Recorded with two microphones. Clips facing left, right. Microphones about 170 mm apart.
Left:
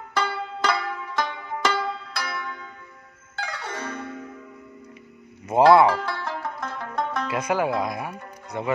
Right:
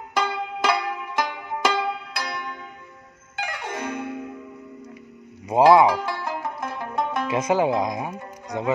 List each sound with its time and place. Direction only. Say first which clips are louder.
0.1 s music: right 2 dB; 15° right (ahead or behind)
5.5 s speech: even; 15° right (ahead or behind)